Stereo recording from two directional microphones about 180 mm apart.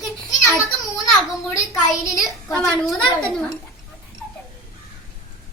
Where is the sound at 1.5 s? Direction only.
20° left (ahead or behind).